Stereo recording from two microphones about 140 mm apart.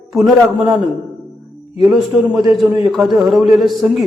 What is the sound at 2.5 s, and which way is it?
A man's voice, centre (ahead or behind).